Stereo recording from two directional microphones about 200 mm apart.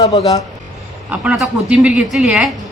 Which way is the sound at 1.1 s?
5° right (ahead or behind).